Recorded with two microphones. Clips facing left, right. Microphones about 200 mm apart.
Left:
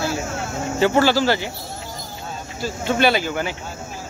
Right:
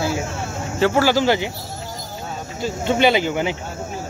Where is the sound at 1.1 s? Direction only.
15° right (ahead or behind).